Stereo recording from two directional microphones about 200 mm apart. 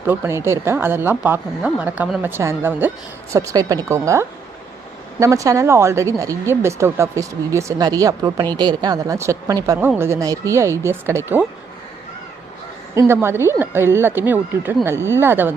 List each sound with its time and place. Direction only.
0.0 s a woman's voice: 10° right (ahead or behind)
12.9 s a woman's voice: 15° right (ahead or behind)